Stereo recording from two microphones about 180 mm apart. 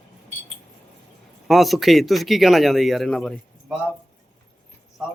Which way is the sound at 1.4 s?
Centre (ahead or behind).